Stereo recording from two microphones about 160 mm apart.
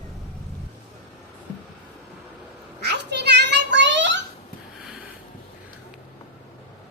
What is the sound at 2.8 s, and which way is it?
Children playing, 90° right.